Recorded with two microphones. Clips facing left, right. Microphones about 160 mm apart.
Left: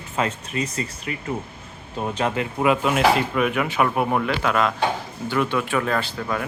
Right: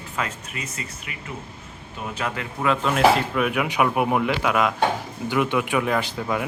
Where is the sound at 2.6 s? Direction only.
10° left (ahead or behind).